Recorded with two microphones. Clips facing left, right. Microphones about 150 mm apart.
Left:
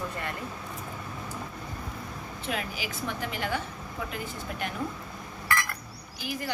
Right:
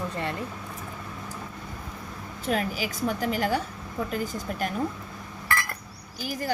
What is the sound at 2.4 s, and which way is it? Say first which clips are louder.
A woman's voice: right 7 dB; 40° right (ahead or behind).